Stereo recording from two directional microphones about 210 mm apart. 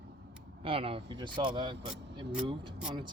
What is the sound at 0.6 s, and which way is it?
Speech, 25° right (ahead or behind).